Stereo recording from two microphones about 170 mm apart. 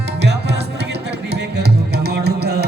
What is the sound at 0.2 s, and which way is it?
Music, 80° right.